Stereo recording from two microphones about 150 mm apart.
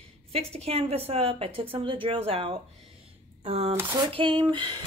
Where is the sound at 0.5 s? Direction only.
40° right (ahead or behind).